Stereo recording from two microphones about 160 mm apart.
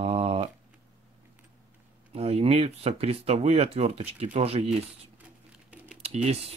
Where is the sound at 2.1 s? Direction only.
40° right (ahead or behind).